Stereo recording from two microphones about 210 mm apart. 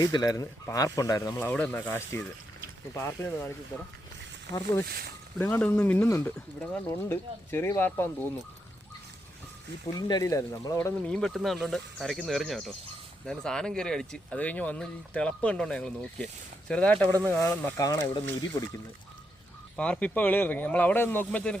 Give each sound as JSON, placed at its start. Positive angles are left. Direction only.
{"t": 0.0, "sound": "speech", "side_deg": 20}
{"t": 5.4, "sound": "speech", "side_deg": 10}
{"t": 9.9, "sound": "speech", "side_deg": 15}
{"t": 19.7, "sound": "speech", "side_deg": 5}